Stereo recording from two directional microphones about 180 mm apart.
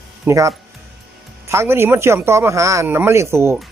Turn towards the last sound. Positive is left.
turn(degrees=-15)  # may be behind; listen again after turning